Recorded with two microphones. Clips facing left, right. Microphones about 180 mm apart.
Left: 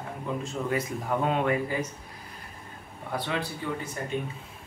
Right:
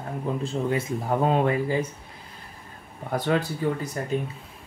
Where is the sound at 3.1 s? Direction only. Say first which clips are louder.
Right 7 dB; 45° right (ahead or behind).